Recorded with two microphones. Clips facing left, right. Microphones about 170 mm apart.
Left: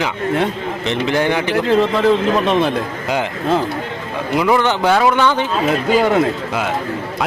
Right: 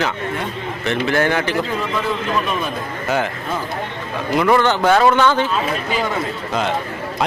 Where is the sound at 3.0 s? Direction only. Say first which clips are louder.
Right 2 dB; 15° left (ahead or behind).